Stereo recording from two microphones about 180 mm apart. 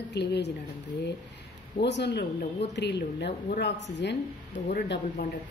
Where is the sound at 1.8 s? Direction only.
70° left (ahead or behind).